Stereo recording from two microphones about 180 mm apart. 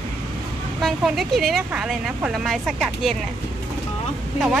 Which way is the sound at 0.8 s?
Centre (ahead or behind).